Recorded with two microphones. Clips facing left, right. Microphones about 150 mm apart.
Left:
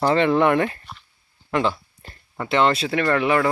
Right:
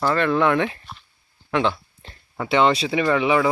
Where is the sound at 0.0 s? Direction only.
20° left (ahead or behind).